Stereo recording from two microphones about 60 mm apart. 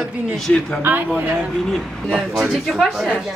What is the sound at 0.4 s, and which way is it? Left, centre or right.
Speech, centre.